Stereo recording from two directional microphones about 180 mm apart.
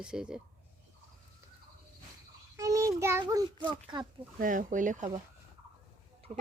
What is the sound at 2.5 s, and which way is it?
Child singing, 20° right (ahead or behind).